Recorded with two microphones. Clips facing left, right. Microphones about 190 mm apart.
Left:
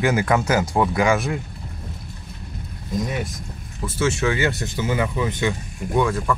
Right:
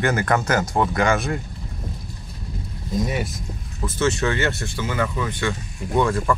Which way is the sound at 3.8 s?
10° left (ahead or behind).